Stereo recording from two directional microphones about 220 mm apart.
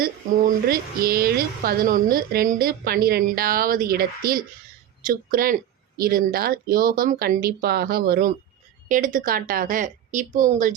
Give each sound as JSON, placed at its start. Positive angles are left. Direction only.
{"t": 0.7, "sound": "a woman's voice", "side_deg": -45}